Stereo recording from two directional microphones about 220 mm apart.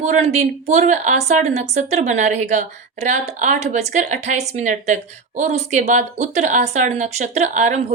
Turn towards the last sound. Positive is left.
turn(degrees=-30)  # may be behind; listen again after turning